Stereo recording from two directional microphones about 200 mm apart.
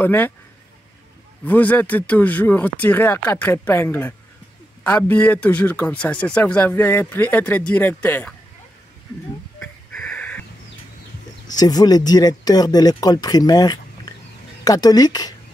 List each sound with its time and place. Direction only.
0.0 s speech: 10° left (ahead or behind)
1.4 s speech: 10° left (ahead or behind)
9.6 s wheeze: 5° left (ahead or behind)
11.4 s speech: 20° left (ahead or behind)